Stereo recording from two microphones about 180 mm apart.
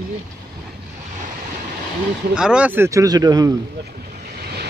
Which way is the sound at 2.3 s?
5° right (ahead or behind).